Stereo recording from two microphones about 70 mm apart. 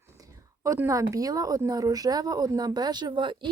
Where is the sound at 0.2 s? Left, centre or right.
Right.